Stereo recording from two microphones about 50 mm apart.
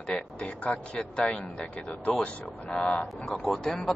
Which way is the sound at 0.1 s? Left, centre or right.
Centre.